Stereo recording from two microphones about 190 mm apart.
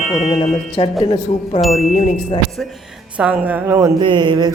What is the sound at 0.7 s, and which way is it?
Speech, 30° left (ahead or behind).